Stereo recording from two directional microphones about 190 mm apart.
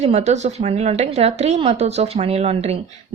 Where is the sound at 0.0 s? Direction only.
35° right (ahead or behind).